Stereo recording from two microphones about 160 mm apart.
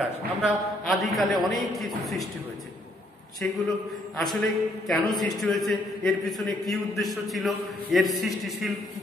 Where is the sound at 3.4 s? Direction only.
10° left (ahead or behind).